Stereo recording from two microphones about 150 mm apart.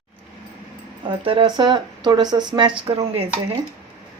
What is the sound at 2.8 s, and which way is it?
Speech, 40° right (ahead or behind).